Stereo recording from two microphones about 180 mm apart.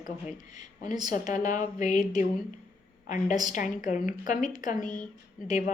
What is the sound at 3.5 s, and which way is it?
Speech, 45° left (ahead or behind).